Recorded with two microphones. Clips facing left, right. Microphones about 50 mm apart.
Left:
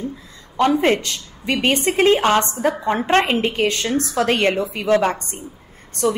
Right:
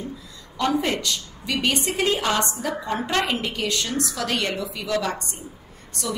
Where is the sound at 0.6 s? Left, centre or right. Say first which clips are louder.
Left 7 dB; left.